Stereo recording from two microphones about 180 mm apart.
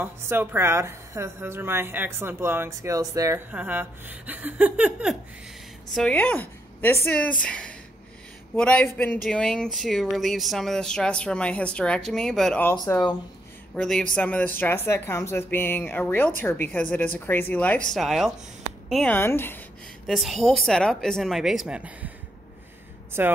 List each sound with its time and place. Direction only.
0.0 s a woman's voice: 10° right (ahead or behind)
5.9 s speech: 5° left (ahead or behind)
12.7 s speech: 20° left (ahead or behind)
13.7 s speech: 5° left (ahead or behind)
19.1 s speech: 10° left (ahead or behind)
20.1 s speech: centre (ahead or behind)
23.2 s a woman's voice: 10° right (ahead or behind)